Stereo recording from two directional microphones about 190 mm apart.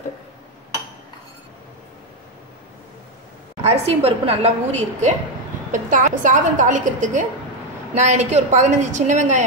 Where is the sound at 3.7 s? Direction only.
30° right (ahead or behind).